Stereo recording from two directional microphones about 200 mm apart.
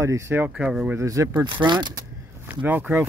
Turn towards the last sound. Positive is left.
turn(degrees=-10)  # may be behind; listen again after turning